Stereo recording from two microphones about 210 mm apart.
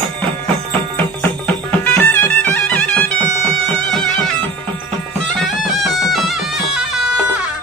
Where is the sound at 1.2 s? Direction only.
10° left (ahead or behind).